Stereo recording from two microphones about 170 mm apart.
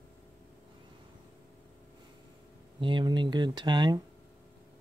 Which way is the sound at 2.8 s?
30° right (ahead or behind).